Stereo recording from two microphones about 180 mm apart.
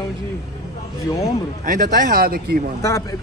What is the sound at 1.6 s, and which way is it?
Speech, 50° right (ahead or behind).